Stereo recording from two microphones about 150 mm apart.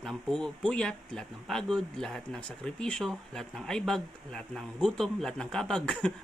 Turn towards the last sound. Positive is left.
turn(degrees=5)  # may be behind; listen again after turning